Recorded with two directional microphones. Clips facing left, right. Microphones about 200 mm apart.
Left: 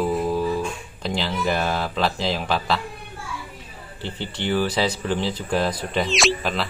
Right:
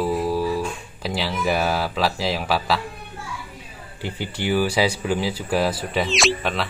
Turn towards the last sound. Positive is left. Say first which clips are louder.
# even
turn(degrees=0)  # may be behind; listen again after turning